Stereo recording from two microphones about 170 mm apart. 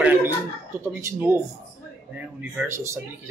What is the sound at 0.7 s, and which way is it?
Speech, 15° right (ahead or behind).